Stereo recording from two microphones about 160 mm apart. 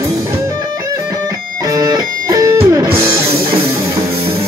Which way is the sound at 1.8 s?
20° right (ahead or behind).